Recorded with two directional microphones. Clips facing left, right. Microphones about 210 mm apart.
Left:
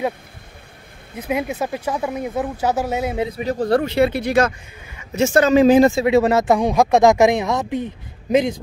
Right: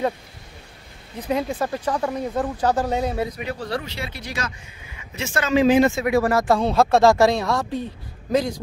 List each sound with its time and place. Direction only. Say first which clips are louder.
1.1 s speech: left 1 dB; 10° left (ahead or behind)
3.2 s a man's voice: left 3 dB; 25° left (ahead or behind)
3.4 s speech: left 10 dB; 45° left (ahead or behind); by 8.5 s 20° left (ahead or behind)